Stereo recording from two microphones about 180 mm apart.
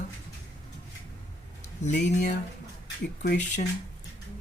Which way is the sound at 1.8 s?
40° left (ahead or behind).